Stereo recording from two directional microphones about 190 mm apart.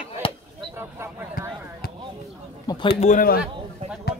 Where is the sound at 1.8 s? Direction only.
50° left (ahead or behind).